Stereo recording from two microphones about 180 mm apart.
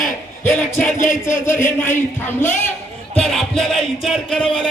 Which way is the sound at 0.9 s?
45° left (ahead or behind).